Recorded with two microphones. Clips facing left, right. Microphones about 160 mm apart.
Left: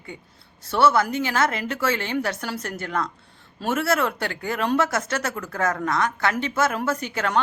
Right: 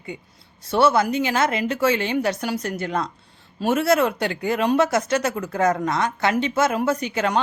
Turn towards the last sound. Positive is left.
turn(degrees=-20)  # may be behind; listen again after turning